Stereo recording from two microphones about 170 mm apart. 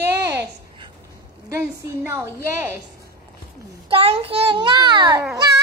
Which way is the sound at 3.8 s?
35° right (ahead or behind).